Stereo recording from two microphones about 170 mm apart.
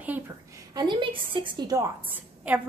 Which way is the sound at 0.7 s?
25° right (ahead or behind).